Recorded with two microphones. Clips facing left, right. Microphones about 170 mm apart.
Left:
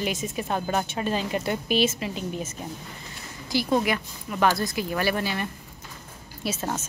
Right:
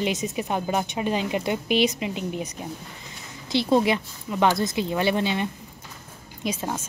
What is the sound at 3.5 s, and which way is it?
Speech, 25° right (ahead or behind).